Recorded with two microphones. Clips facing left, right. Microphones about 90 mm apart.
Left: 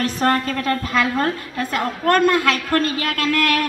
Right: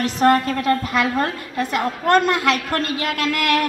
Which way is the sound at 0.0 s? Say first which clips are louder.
Right 3 dB; 20° right (ahead or behind).